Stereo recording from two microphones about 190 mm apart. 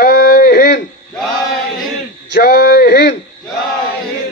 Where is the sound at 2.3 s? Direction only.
55° left (ahead or behind).